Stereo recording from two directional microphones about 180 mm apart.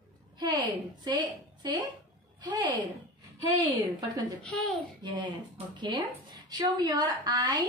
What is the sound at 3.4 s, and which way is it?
Speech, 20° right (ahead or behind).